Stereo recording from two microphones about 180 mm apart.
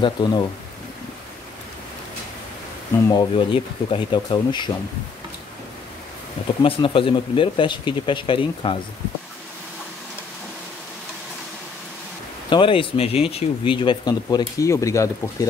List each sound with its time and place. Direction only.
0.0 s speech: 25° left (ahead or behind)
3.1 s speech: 25° left (ahead or behind)
6.6 s speech: 30° left (ahead or behind)
12.4 s speech: 25° left (ahead or behind)